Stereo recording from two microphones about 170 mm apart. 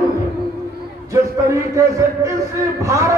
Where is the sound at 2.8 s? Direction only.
15° right (ahead or behind).